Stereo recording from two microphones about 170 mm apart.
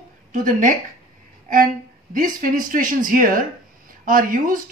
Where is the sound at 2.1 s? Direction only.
55° right (ahead or behind).